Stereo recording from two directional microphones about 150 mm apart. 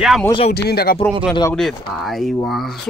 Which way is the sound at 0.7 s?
90° left.